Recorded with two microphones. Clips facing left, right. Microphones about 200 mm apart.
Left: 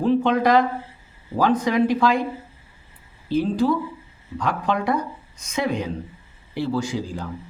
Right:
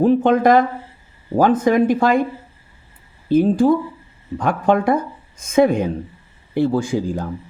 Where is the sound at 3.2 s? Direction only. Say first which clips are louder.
Right 6 dB; 50° right (ahead or behind).